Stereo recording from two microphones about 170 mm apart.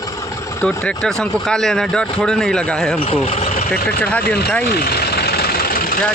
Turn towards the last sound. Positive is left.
turn(degrees=60)  # may be behind; listen again after turning